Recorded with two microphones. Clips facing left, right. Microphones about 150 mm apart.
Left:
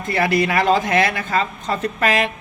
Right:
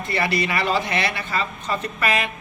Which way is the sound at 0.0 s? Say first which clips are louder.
Left 5 dB; 55° left (ahead or behind).